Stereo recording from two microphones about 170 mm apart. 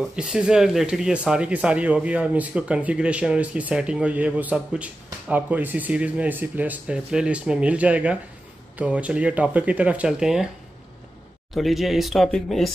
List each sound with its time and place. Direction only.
0.1 s speech: 5° right (ahead or behind)
11.5 s speech: centre (ahead or behind)